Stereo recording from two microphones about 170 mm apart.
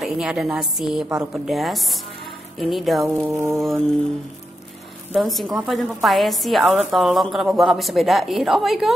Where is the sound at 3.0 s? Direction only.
15° right (ahead or behind).